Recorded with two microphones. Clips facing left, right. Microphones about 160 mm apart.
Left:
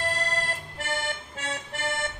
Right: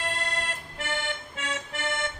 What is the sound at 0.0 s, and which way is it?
Music, 40° left (ahead or behind).